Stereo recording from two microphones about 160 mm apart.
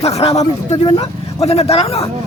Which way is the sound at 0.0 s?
40° left (ahead or behind).